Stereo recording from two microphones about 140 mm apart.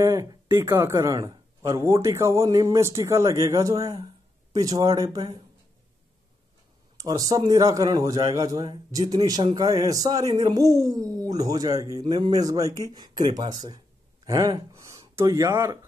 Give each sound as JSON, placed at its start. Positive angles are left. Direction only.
{"t": 0.0, "sound": "speech", "side_deg": -20}
{"t": 7.0, "sound": "speech", "side_deg": -25}